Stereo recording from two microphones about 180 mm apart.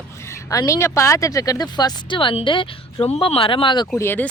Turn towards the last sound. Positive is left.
turn(degrees=10)  # may be behind; listen again after turning